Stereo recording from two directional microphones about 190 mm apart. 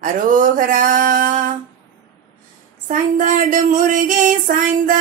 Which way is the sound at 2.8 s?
45° right (ahead or behind).